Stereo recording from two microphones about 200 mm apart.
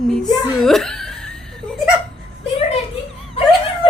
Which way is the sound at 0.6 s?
5° left (ahead or behind).